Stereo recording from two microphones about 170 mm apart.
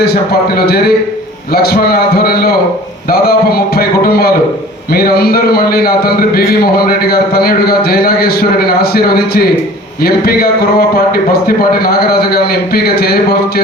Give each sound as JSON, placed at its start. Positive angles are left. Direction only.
{"t": 0.0, "sound": "a man's voice", "side_deg": 65}